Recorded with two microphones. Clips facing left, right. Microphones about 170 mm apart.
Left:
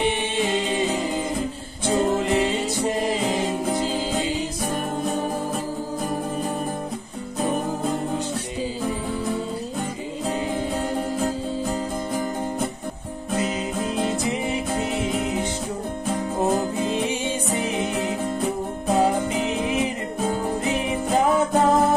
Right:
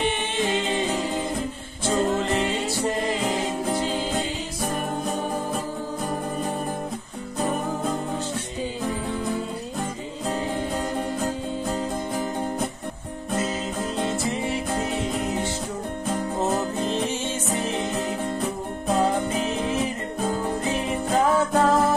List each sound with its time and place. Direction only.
1.9 s music: 15° left (ahead or behind)
13.4 s music: 15° left (ahead or behind)
16.5 s music: 15° left (ahead or behind)